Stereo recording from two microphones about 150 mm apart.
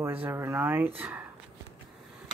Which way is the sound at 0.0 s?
15° right (ahead or behind).